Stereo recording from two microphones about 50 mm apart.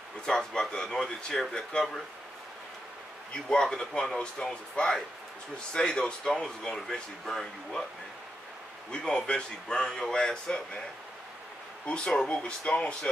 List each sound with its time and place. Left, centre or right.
0.3 s speech: centre
3.4 s speech: centre
8.9 s speech: centre
11.8 s speech: left